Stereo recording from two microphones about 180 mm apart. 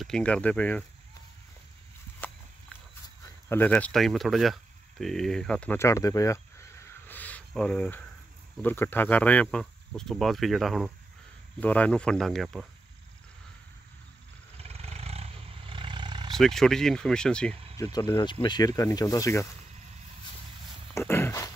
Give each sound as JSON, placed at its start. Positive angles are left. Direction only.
{"t": 0.0, "sound": "speech", "side_deg": 5}
{"t": 2.2, "sound": "walk", "side_deg": 10}
{"t": 3.4, "sound": "speech", "side_deg": 10}
{"t": 14.6, "sound": "roar", "side_deg": -35}
{"t": 16.3, "sound": "speech", "side_deg": 0}
{"t": 17.7, "sound": "speech", "side_deg": 20}
{"t": 20.9, "sound": "a sound", "side_deg": 15}